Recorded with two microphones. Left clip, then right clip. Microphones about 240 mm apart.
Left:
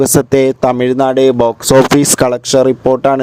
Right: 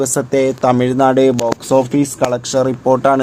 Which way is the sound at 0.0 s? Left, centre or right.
Left.